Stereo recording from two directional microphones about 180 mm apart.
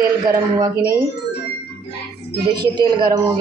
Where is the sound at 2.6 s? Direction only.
25° right (ahead or behind).